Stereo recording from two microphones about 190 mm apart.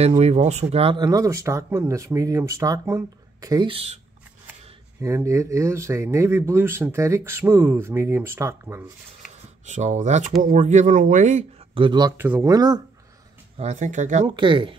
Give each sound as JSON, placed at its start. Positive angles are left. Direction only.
{"t": 0.2, "sound": "speech", "side_deg": -35}
{"t": 5.0, "sound": "speech", "side_deg": -15}
{"t": 9.7, "sound": "speech", "side_deg": -40}
{"t": 11.8, "sound": "speech", "side_deg": -25}
{"t": 12.2, "sound": "speech", "side_deg": -10}
{"t": 13.6, "sound": "speech", "side_deg": -35}
{"t": 14.2, "sound": "speech", "side_deg": -25}